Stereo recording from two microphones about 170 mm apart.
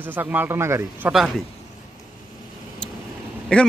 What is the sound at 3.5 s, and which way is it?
Speech, 5° left (ahead or behind).